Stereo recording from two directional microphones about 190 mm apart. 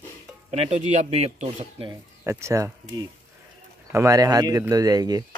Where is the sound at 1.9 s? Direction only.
15° right (ahead or behind).